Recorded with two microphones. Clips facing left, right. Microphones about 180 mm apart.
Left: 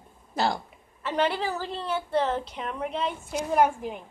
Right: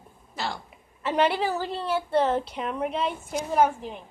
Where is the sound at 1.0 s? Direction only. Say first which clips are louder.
Right 3 dB; 10° right (ahead or behind).